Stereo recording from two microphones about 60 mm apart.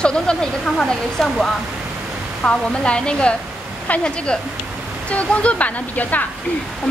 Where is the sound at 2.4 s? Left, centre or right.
Centre.